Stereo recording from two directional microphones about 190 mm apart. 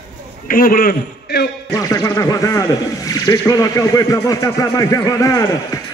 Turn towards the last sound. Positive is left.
turn(degrees=20)  # may be behind; listen again after turning